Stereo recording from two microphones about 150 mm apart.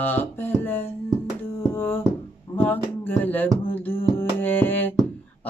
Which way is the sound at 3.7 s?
15° left (ahead or behind).